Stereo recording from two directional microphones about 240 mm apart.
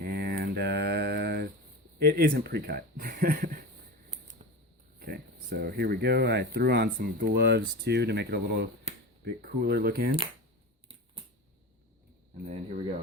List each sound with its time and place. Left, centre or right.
0.1 s mantra: right
2.0 s speech: right
4.9 s speech: right
12.5 s a sound: right